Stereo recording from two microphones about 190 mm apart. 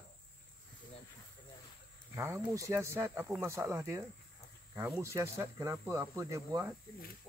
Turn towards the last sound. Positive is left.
turn(degrees=-20)  # may be behind; listen again after turning